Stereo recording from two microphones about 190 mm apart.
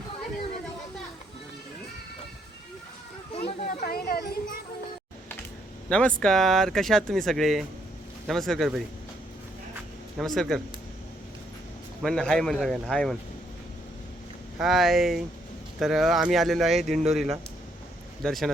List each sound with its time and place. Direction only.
3.7 s a sound: 45° left (ahead or behind)
5.9 s speech: 5° left (ahead or behind)
10.2 s speech: centre (ahead or behind)
12.0 s speech: 5° left (ahead or behind)
14.6 s speech: centre (ahead or behind)